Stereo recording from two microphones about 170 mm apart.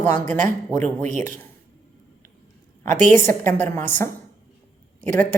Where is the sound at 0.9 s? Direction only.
50° right (ahead or behind).